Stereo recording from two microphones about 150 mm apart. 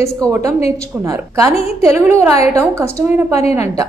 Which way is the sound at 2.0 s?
15° right (ahead or behind).